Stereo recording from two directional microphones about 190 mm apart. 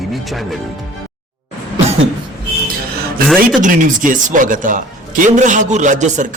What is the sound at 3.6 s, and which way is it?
A man's voice, 45° right (ahead or behind).